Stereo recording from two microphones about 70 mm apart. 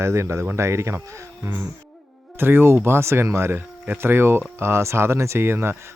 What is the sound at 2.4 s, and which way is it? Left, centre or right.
Speech, right.